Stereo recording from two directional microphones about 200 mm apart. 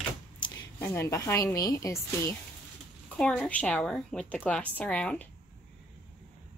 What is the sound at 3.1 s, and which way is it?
A woman's voice, 5° left (ahead or behind).